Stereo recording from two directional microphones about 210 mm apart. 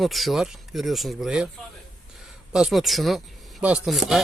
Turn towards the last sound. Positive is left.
turn(degrees=0)  # may be behind; listen again after turning